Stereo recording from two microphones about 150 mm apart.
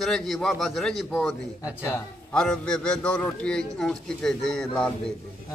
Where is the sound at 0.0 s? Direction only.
Centre (ahead or behind).